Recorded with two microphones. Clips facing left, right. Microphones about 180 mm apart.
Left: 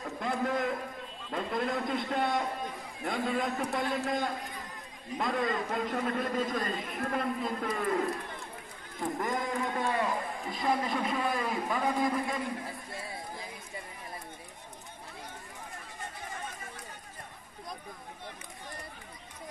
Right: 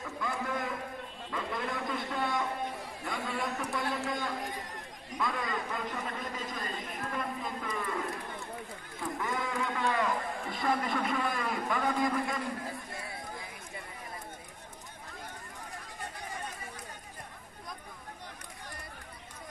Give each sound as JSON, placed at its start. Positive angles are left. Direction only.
{"t": 0.2, "sound": "a sound", "side_deg": 45}
{"t": 3.1, "sound": "a man's voice", "side_deg": 45}
{"t": 9.2, "sound": "speech", "side_deg": 45}
{"t": 9.8, "sound": "a man's voice", "side_deg": 25}